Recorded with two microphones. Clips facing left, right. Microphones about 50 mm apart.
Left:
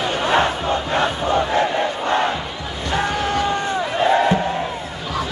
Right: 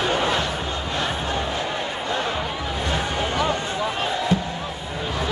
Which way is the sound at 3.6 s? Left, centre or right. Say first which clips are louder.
Left 6 dB; left.